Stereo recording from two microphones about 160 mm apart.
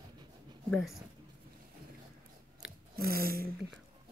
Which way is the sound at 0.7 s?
Centre (ahead or behind).